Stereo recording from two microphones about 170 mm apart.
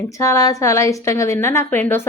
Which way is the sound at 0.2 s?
20° left (ahead or behind).